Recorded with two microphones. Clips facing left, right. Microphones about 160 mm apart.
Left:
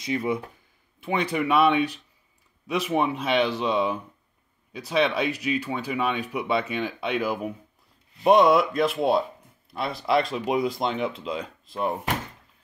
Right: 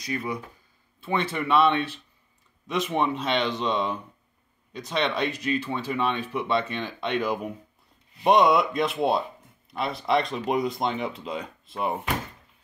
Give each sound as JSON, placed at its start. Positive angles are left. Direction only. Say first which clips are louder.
{"t": 0.0, "sound": "speech", "louder": "left 4 dB", "side_deg": 25}
{"t": 1.0, "sound": "speech", "louder": "left 2 dB", "side_deg": 15}